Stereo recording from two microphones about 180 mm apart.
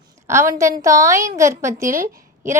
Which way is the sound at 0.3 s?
15° right (ahead or behind).